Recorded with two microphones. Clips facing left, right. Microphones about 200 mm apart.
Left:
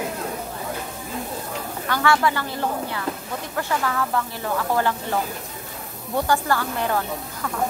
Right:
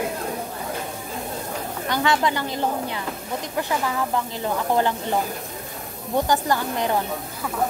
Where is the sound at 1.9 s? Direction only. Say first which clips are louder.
Left 1 dB; 20° right (ahead or behind).